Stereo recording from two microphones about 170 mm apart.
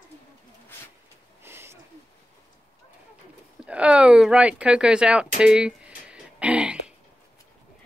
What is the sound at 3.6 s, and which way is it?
Speech, 5° right (ahead or behind).